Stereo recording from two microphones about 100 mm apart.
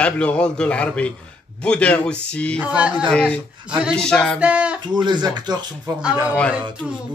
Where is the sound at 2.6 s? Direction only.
10° right (ahead or behind).